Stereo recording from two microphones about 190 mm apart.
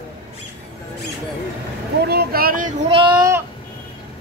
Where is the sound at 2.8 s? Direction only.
30° right (ahead or behind).